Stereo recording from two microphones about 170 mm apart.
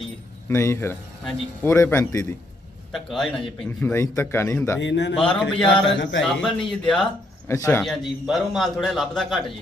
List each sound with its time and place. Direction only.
0.4 s speech: 15° left (ahead or behind)
2.9 s a man's voice: centre (ahead or behind)
3.9 s speech: 15° left (ahead or behind)
4.8 s a man's voice: 90° left
5.4 s a man's voice: 5° left (ahead or behind)
6.0 s a man's voice: 90° left
6.2 s a man's voice: 5° left (ahead or behind)
7.4 s speech: 15° left (ahead or behind)
7.8 s a man's voice: centre (ahead or behind)